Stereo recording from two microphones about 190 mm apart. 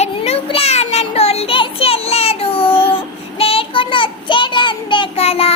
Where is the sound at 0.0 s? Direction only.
30° left (ahead or behind).